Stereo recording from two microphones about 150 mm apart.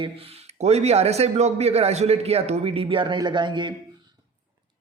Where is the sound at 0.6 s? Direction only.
45° right (ahead or behind).